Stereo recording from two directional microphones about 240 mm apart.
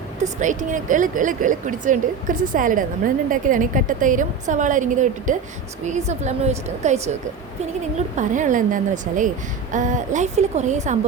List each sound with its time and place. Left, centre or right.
0.3 s a woman's voice: right